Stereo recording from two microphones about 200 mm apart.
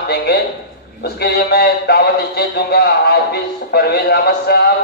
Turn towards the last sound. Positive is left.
turn(degrees=50)  # may be behind; listen again after turning